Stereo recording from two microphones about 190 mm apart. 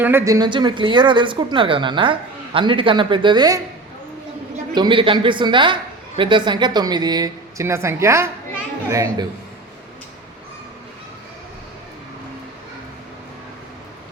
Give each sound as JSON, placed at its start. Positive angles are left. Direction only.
{"t": 0.0, "sound": "speech", "side_deg": -10}
{"t": 4.7, "sound": "a man's voice", "side_deg": -25}